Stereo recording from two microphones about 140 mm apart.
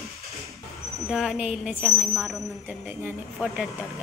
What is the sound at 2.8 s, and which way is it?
Speech, 15° right (ahead or behind).